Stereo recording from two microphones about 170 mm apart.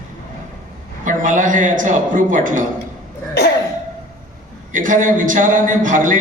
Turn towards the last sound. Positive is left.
turn(degrees=-50)  # may be behind; listen again after turning